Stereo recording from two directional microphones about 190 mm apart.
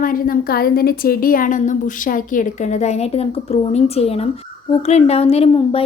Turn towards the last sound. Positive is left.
turn(degrees=30)  # may be behind; listen again after turning